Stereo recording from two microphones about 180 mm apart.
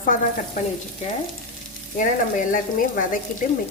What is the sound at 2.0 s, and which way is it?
A woman's voice, 50° left (ahead or behind).